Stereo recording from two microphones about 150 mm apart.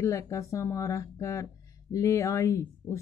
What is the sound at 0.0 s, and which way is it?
Speech, 20° left (ahead or behind).